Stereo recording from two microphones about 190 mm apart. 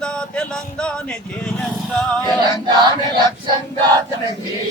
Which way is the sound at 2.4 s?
25° right (ahead or behind).